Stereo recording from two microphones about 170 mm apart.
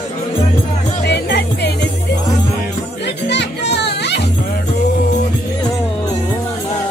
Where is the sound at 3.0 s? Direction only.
85° left.